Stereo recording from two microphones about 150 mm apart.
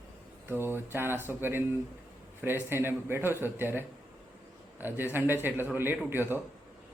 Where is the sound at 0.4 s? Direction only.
15° right (ahead or behind).